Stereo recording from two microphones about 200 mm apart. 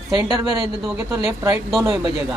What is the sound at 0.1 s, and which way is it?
A woman's voice, 20° right (ahead or behind).